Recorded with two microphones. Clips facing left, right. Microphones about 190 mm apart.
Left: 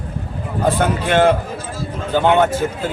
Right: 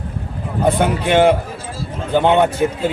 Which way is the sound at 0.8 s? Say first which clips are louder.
Right 1 dB; 15° right (ahead or behind).